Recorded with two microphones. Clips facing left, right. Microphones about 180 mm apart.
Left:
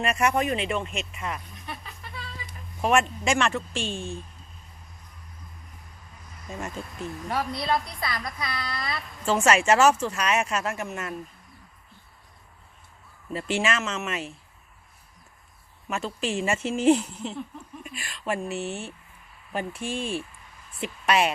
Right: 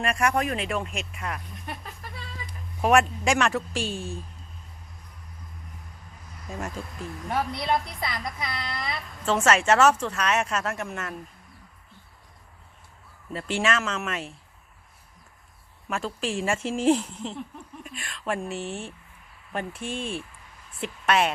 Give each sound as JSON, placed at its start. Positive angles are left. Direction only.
{"t": 0.0, "sound": "speech", "side_deg": 5}
{"t": 2.8, "sound": "speech", "side_deg": 0}
{"t": 6.5, "sound": "speech", "side_deg": 0}
{"t": 7.3, "sound": "a woman's voice", "side_deg": -20}
{"t": 9.2, "sound": "speech", "side_deg": 10}
{"t": 13.3, "sound": "speech", "side_deg": 5}
{"t": 15.9, "sound": "speech", "side_deg": 0}